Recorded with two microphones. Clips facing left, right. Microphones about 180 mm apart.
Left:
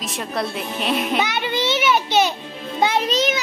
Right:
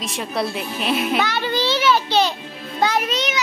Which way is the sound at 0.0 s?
Centre (ahead or behind).